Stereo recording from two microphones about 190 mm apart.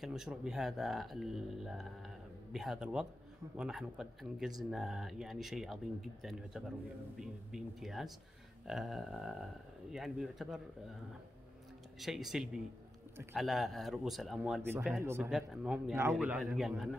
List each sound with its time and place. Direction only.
0.0 s speech: 5° right (ahead or behind)
7.2 s speech: centre (ahead or behind)
12.0 s speech: centre (ahead or behind)